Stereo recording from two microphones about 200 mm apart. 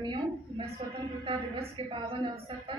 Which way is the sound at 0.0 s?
25° right (ahead or behind).